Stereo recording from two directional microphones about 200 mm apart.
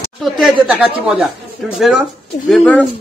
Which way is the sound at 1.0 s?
Centre (ahead or behind).